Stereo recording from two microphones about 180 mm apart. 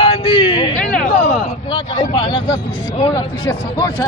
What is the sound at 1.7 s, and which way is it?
Speech, 25° left (ahead or behind).